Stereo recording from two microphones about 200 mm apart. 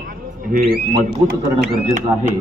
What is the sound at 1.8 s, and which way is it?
Speech, 35° right (ahead or behind).